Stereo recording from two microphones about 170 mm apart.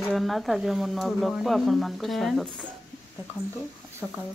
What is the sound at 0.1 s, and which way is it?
Speech, centre (ahead or behind).